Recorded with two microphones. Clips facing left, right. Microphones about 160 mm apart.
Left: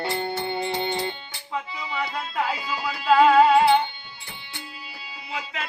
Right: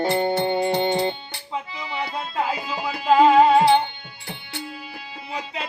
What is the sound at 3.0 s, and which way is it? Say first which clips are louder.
Music: right 1 dB; 20° right (ahead or behind).